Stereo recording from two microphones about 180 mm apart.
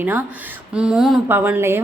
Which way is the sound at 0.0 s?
10° right (ahead or behind).